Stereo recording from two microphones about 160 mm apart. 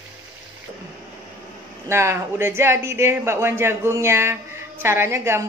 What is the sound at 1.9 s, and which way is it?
Speech, 15° right (ahead or behind).